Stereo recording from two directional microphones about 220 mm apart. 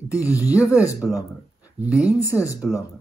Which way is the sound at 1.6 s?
5° right (ahead or behind).